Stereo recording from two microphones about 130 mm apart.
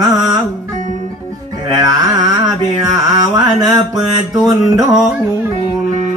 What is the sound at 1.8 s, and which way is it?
Carnatic music, 30° right (ahead or behind).